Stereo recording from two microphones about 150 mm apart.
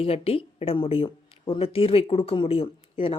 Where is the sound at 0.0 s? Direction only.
40° left (ahead or behind).